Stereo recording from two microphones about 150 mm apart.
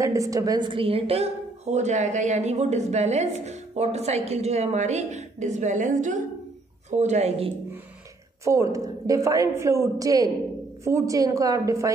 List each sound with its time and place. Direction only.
0.0 s a woman's voice: 20° right (ahead or behind); by 7.5 s 45° right (ahead or behind)
8.5 s a woman's voice: 20° right (ahead or behind)